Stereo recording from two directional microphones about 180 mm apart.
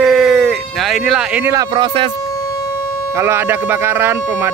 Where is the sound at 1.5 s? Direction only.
25° right (ahead or behind).